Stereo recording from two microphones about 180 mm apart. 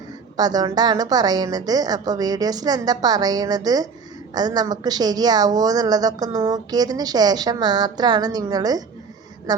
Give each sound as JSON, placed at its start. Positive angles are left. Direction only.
{"t": 0.3, "sound": "a woman's voice", "side_deg": -20}